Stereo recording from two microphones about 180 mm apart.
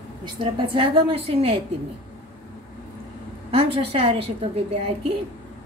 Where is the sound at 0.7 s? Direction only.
30° right (ahead or behind).